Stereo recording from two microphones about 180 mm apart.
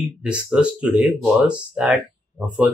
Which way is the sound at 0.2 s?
5° right (ahead or behind).